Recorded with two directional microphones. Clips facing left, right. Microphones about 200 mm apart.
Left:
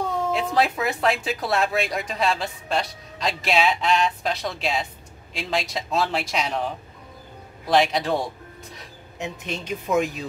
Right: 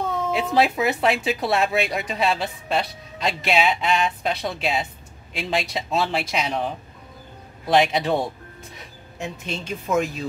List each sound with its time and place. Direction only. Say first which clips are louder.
0.3 s speech: right 3 dB; 5° right (ahead or behind)
9.2 s speech: even; 15° left (ahead or behind)